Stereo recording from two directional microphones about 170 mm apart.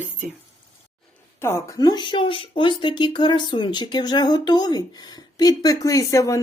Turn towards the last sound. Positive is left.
turn(degrees=20)  # may be behind; listen again after turning